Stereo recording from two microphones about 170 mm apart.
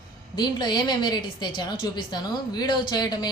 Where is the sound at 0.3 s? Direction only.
25° left (ahead or behind).